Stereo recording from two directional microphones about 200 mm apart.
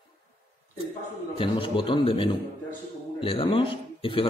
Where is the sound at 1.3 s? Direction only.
25° left (ahead or behind).